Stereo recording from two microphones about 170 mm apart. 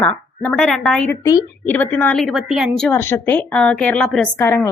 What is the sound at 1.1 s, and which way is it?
Speech, 20° left (ahead or behind).